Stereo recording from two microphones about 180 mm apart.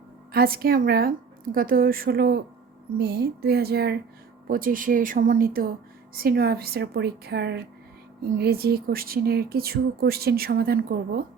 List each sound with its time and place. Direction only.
0.3 s speech: 55° right (ahead or behind)
4.4 s speech: 50° right (ahead or behind)